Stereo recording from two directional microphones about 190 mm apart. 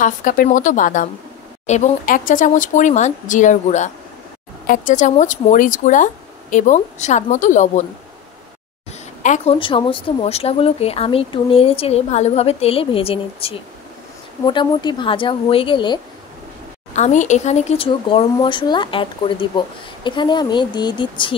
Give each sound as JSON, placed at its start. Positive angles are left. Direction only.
{"t": 0.0, "sound": "a woman's voice", "side_deg": 45}
{"t": 9.2, "sound": "speech", "side_deg": 35}
{"t": 16.9, "sound": "speech", "side_deg": 40}